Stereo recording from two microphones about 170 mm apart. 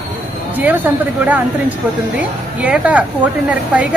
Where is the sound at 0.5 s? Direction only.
10° right (ahead or behind).